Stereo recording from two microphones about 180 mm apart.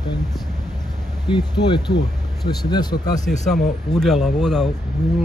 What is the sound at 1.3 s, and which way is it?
Speech, 25° left (ahead or behind).